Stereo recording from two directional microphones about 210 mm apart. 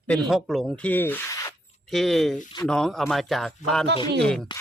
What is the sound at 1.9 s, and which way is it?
Speech, centre (ahead or behind).